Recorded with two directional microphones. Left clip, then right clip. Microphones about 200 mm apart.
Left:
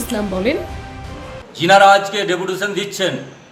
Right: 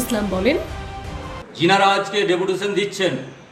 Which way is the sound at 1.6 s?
Centre (ahead or behind).